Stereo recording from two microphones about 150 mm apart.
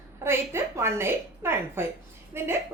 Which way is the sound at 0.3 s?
15° right (ahead or behind).